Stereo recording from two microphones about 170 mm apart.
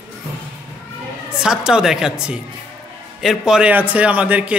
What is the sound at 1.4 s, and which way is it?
A man's voice, 5° right (ahead or behind).